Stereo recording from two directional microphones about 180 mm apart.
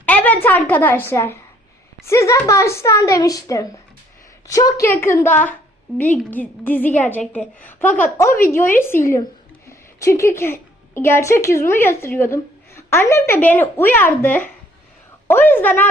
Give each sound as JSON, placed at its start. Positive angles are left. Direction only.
{"t": 0.0, "sound": "a woman's voice", "side_deg": 10}